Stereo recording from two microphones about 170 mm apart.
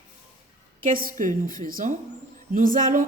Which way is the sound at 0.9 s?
55° right (ahead or behind).